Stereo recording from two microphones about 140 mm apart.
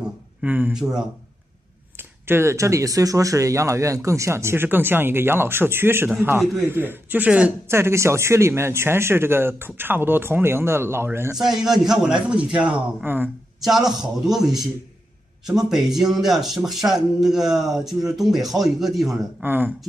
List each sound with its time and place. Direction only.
0.4 s speech: 10° right (ahead or behind)
2.0 s speech: 15° right (ahead or behind)
11.3 s speech: 5° right (ahead or behind)
13.6 s speech: centre (ahead or behind)
19.4 s speech: 15° right (ahead or behind)